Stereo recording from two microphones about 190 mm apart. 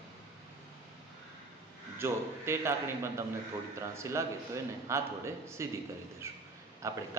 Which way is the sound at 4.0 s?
15° right (ahead or behind).